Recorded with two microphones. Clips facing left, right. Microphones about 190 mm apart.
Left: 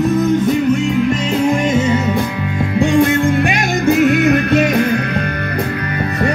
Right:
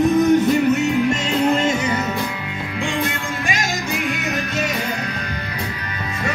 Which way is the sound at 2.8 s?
45° left (ahead or behind).